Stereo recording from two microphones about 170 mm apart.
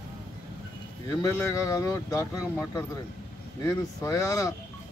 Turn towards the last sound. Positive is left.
turn(degrees=20)  # may be behind; listen again after turning